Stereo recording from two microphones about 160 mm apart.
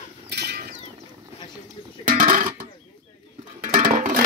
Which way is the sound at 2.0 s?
55° right (ahead or behind).